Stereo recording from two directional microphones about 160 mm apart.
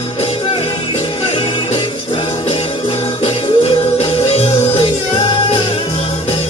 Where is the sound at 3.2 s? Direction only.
40° left (ahead or behind).